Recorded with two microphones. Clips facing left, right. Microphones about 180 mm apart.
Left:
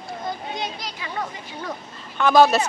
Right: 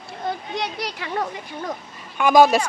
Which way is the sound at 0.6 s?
70° right (ahead or behind).